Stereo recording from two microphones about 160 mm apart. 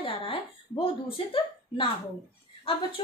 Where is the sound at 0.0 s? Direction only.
35° left (ahead or behind).